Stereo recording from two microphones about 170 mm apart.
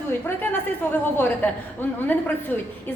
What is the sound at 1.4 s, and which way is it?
A woman's voice, 10° left (ahead or behind).